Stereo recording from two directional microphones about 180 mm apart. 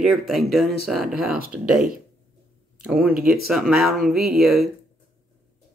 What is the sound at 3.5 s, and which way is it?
Speech, centre (ahead or behind).